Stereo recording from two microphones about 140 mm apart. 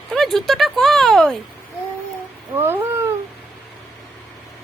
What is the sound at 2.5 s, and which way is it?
Speech, 15° right (ahead or behind).